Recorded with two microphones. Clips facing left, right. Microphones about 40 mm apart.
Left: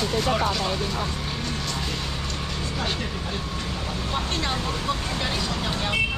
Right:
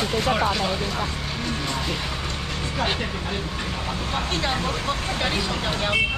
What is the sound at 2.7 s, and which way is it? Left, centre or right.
Speech, right.